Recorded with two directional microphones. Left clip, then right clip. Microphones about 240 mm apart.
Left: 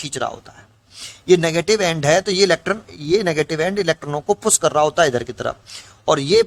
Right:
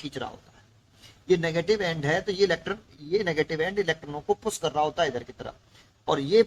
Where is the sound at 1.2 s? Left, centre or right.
Left.